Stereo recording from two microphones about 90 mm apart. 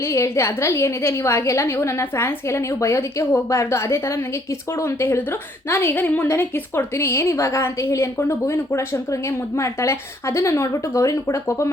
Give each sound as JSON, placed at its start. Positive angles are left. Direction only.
{"t": 0.0, "sound": "a woman's voice", "side_deg": 30}